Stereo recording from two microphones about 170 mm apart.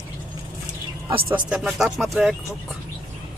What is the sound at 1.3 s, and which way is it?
A woman's voice, 5° right (ahead or behind).